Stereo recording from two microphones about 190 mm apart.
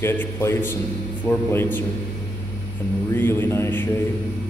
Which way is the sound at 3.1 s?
10° left (ahead or behind).